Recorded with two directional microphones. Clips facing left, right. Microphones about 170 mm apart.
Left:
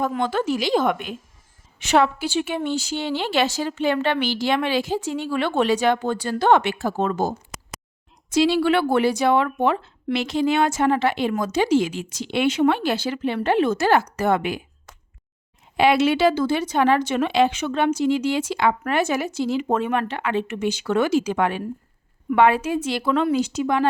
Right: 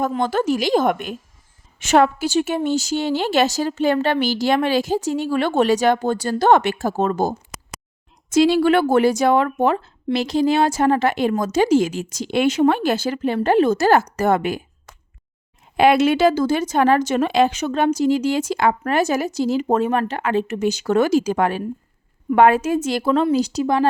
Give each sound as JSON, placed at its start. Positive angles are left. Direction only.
{"t": 0.1, "sound": "a woman's voice", "side_deg": -40}
{"t": 15.8, "sound": "a woman's voice", "side_deg": -50}